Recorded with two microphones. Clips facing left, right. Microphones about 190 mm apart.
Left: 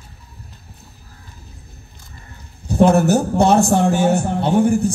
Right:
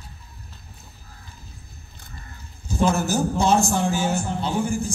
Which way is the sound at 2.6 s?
65° left (ahead or behind).